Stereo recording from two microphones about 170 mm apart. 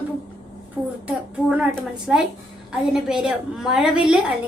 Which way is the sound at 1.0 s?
5° right (ahead or behind).